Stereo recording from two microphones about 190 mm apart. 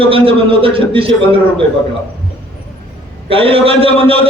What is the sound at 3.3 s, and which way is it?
Speech, 30° right (ahead or behind).